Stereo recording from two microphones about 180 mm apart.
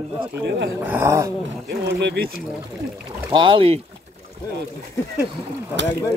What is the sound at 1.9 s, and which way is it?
Speech, 70° right (ahead or behind).